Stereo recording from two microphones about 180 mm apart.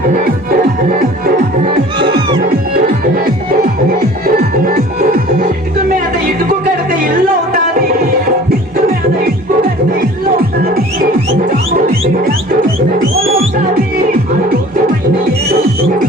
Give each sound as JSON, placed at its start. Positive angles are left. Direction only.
{"t": 0.3, "sound": "music", "side_deg": -50}
{"t": 2.0, "sound": "music", "side_deg": -25}
{"t": 3.2, "sound": "music", "side_deg": -55}
{"t": 11.9, "sound": "music", "side_deg": -55}
{"t": 14.1, "sound": "music", "side_deg": -50}